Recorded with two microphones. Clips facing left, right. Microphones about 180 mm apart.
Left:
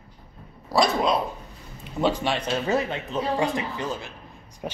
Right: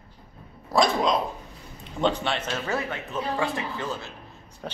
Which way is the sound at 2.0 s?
10° left (ahead or behind).